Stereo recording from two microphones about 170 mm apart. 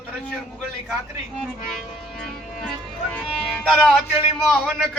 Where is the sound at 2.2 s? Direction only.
5° left (ahead or behind).